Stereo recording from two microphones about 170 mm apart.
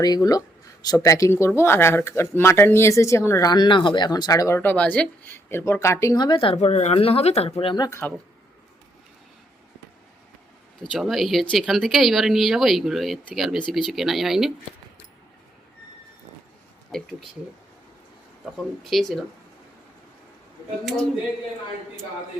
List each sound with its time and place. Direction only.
0.0 s speech: 20° left (ahead or behind)
7.9 s speech: 15° left (ahead or behind)
10.8 s speech: centre (ahead or behind)
18.5 s speech: centre (ahead or behind)
20.8 s speech: 5° left (ahead or behind)